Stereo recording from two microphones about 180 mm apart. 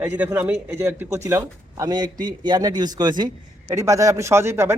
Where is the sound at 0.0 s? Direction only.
10° right (ahead or behind).